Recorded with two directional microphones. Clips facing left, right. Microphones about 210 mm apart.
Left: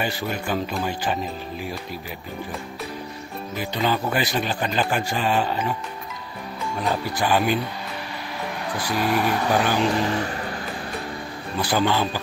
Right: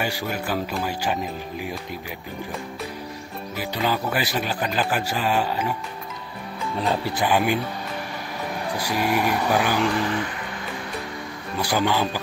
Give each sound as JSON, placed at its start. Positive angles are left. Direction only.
{"t": 0.0, "sound": "speech", "side_deg": -10}
{"t": 3.5, "sound": "speech", "side_deg": -5}
{"t": 6.9, "sound": "speech", "side_deg": -20}
{"t": 8.7, "sound": "speech", "side_deg": -10}
{"t": 10.1, "sound": "speech", "side_deg": 40}
{"t": 11.6, "sound": "speech", "side_deg": -10}